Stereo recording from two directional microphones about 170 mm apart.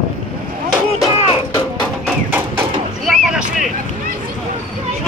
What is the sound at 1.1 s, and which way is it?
Music, 35° left (ahead or behind).